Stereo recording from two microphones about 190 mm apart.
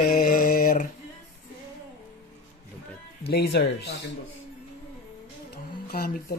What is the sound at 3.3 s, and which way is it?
Speech, 60° left (ahead or behind).